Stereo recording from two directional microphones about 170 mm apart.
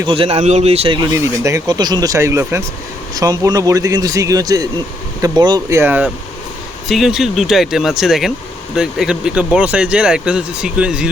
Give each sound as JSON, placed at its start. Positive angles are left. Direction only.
{"t": 0.1, "sound": "speech", "side_deg": -35}
{"t": 1.5, "sound": "speech", "side_deg": -20}
{"t": 6.8, "sound": "speech", "side_deg": 0}